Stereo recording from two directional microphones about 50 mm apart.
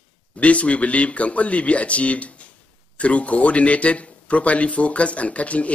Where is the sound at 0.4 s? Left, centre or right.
Left.